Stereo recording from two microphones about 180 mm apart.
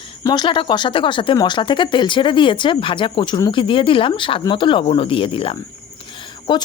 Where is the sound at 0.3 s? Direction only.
25° left (ahead or behind).